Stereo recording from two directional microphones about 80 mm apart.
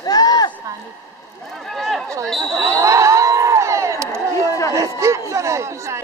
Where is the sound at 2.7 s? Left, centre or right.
Right.